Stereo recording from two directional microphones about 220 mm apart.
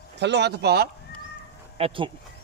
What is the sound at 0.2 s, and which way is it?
Speech, 50° right (ahead or behind).